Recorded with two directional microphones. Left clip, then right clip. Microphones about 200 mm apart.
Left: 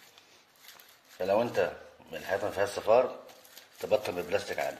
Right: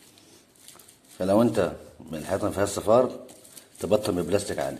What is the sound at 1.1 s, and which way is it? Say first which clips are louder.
Speech: right 5 dB; 5° right (ahead or behind).